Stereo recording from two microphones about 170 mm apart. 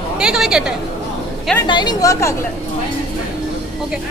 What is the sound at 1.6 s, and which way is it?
Speech, 25° left (ahead or behind).